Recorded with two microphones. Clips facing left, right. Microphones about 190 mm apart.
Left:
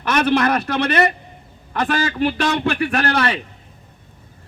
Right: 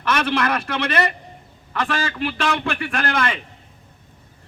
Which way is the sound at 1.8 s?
45° left (ahead or behind).